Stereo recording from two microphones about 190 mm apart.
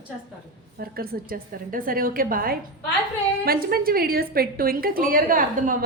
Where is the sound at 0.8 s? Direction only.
50° right (ahead or behind).